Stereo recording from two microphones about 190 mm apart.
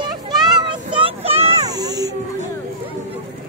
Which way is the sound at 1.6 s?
20° right (ahead or behind).